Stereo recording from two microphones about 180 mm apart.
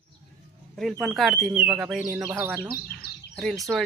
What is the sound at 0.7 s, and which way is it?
Speech, centre (ahead or behind).